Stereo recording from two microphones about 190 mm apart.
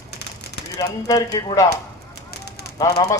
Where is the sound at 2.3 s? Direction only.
60° left (ahead or behind).